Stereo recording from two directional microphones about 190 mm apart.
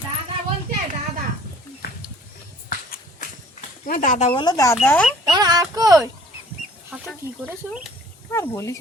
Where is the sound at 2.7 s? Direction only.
45° left (ahead or behind).